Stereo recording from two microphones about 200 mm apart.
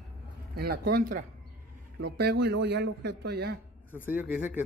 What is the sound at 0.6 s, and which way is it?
A man's voice, 50° right (ahead or behind).